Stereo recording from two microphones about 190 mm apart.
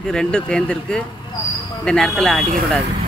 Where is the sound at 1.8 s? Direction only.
5° left (ahead or behind).